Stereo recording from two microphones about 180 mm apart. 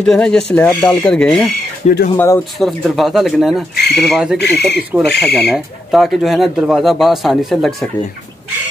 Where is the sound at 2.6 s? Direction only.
Centre (ahead or behind).